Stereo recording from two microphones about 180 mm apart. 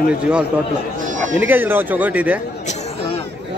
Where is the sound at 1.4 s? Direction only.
10° right (ahead or behind).